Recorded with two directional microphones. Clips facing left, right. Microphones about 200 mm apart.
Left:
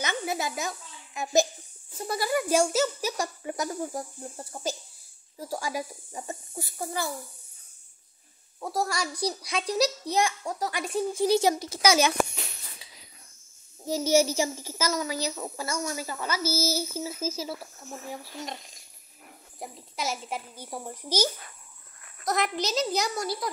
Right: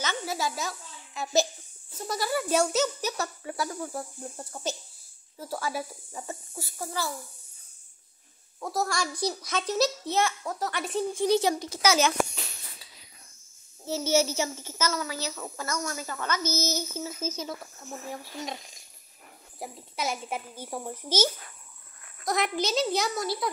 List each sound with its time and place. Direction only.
0.0 s a child's voice: 15° left (ahead or behind)
4.4 s a woman's voice: 10° left (ahead or behind)
8.5 s a woman's voice: 10° left (ahead or behind)
13.8 s a woman's voice: 15° left (ahead or behind)
19.6 s a child's voice: centre (ahead or behind)
22.3 s a child's voice: centre (ahead or behind)